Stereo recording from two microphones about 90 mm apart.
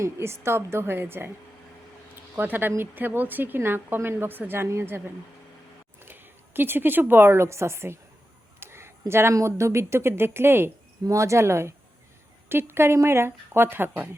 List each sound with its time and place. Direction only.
0.0 s a woman's voice: 30° right (ahead or behind)
2.3 s a woman's voice: 20° right (ahead or behind)
12.7 s a woman's voice: 30° right (ahead or behind)